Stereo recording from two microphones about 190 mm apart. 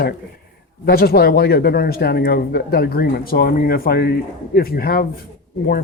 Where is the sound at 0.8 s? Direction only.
55° left (ahead or behind).